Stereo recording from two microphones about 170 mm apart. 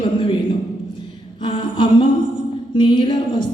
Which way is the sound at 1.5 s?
30° left (ahead or behind).